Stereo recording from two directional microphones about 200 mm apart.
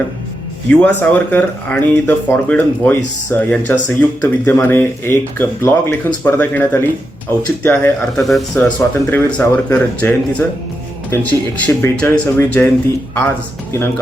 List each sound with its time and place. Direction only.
0.7 s speech: 10° left (ahead or behind)